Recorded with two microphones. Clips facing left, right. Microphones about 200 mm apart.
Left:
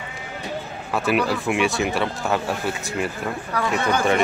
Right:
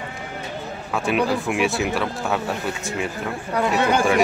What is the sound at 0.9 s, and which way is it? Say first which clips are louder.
Speech: even; centre (ahead or behind).